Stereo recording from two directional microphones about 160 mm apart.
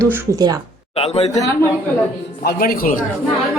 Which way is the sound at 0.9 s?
40° left (ahead or behind).